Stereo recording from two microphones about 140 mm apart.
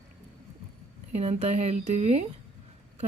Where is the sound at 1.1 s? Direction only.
50° right (ahead or behind).